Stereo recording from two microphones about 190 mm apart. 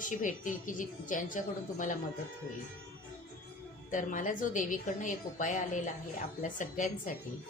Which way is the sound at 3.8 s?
45° left (ahead or behind).